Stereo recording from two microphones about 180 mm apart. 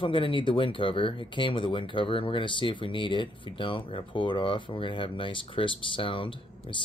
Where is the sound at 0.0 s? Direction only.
30° left (ahead or behind).